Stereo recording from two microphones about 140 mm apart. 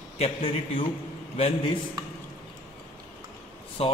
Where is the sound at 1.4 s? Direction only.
45° left (ahead or behind).